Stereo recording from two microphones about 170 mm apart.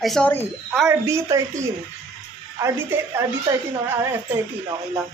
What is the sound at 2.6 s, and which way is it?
Speech, 15° right (ahead or behind).